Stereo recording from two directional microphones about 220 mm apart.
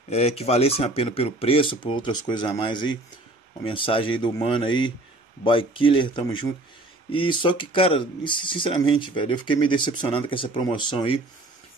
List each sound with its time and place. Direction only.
0.1 s speech: 30° left (ahead or behind)